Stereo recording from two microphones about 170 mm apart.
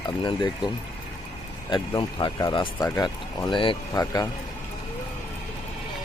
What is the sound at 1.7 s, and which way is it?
Speech, 25° left (ahead or behind).